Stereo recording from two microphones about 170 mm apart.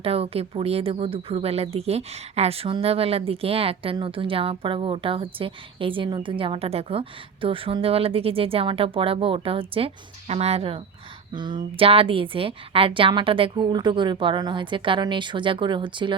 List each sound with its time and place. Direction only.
0.0 s a woman's voice: 35° right (ahead or behind)